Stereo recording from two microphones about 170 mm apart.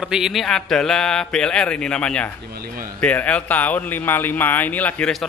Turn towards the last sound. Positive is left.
turn(degrees=5)  # may be behind; listen again after turning